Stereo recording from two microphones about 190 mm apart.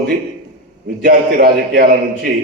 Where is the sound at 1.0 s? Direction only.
60° right (ahead or behind).